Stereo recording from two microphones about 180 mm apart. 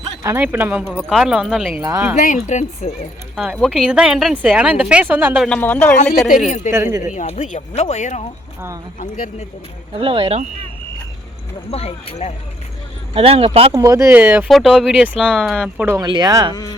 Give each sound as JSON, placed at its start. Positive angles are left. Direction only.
{"t": 0.2, "sound": "a woman's voice", "side_deg": -15}
{"t": 1.8, "sound": "speech", "side_deg": -15}
{"t": 2.1, "sound": "speech", "side_deg": 45}
{"t": 3.3, "sound": "a woman's voice", "side_deg": -5}
{"t": 5.5, "sound": "a man's voice", "side_deg": 10}
{"t": 6.2, "sound": "a woman's voice", "side_deg": 0}
{"t": 6.7, "sound": "speech", "side_deg": -15}
{"t": 7.2, "sound": "speech", "side_deg": 40}
{"t": 9.0, "sound": "speech", "side_deg": 50}
{"t": 10.0, "sound": "speech", "side_deg": -30}
{"t": 11.7, "sound": "speech", "side_deg": 35}
{"t": 13.1, "sound": "speech", "side_deg": -35}
{"t": 13.7, "sound": "a woman's voice", "side_deg": -15}
{"t": 16.0, "sound": "speech", "side_deg": -25}